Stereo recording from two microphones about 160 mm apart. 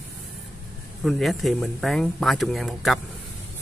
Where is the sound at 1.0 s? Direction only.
Centre (ahead or behind).